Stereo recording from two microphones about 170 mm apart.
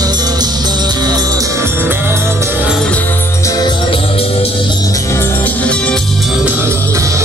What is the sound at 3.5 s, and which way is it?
Music, 30° left (ahead or behind).